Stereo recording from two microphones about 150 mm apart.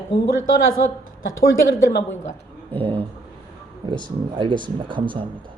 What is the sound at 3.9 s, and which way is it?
Speech, 30° right (ahead or behind).